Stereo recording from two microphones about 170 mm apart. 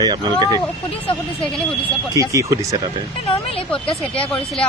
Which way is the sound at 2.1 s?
20° right (ahead or behind).